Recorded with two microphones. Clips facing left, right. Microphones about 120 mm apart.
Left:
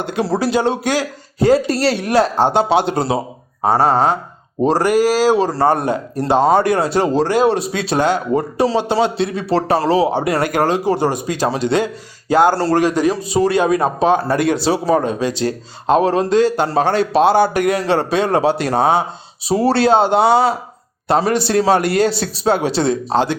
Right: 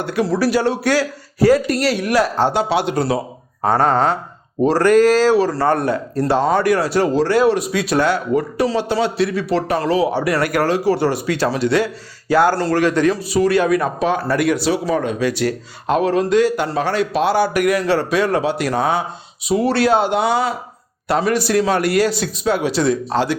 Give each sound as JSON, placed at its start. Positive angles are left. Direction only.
{"t": 0.0, "sound": "speech", "side_deg": 25}
{"t": 12.5, "sound": "speech", "side_deg": 30}
{"t": 12.8, "sound": "speech", "side_deg": 15}